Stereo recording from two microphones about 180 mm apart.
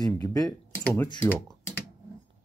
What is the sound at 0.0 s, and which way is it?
Speech, 20° left (ahead or behind).